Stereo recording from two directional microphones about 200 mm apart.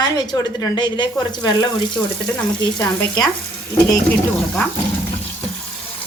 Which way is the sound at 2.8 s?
20° left (ahead or behind).